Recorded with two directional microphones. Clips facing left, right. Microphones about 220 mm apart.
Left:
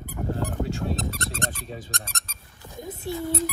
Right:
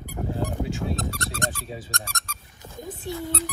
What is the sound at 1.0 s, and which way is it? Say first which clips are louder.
Speech: right 1 dB; 15° left (ahead or behind).